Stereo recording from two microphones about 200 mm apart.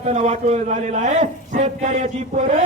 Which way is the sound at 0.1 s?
35° right (ahead or behind).